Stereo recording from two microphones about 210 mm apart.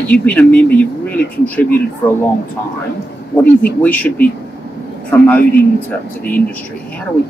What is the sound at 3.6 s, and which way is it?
Speech, 5° left (ahead or behind).